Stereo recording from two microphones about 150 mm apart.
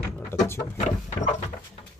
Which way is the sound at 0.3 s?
15° left (ahead or behind).